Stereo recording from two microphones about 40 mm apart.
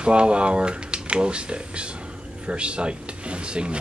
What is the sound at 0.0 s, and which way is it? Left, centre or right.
Speech, right.